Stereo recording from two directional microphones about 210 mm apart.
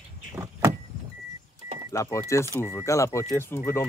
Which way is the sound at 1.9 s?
15° left (ahead or behind).